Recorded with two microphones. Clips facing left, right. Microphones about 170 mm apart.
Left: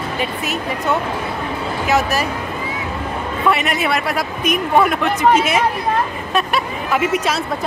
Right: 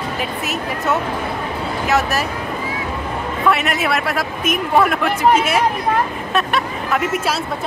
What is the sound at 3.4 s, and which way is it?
Speech, centre (ahead or behind).